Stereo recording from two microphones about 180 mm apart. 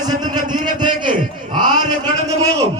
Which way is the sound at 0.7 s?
25° right (ahead or behind).